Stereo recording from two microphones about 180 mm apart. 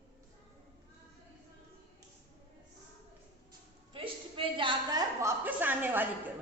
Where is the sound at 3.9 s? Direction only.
30° right (ahead or behind); by 6.1 s 10° right (ahead or behind).